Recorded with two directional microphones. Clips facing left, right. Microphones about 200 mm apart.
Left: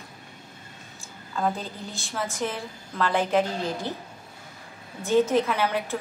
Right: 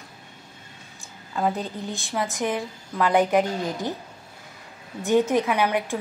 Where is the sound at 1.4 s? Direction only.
15° right (ahead or behind).